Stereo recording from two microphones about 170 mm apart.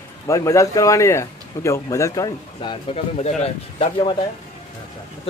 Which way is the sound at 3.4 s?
35° left (ahead or behind).